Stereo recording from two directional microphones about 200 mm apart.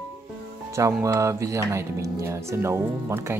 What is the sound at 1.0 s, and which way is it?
Speech, 15° right (ahead or behind).